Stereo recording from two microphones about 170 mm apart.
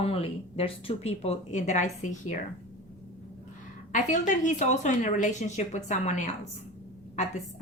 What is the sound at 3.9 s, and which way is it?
A woman's voice, 45° left (ahead or behind).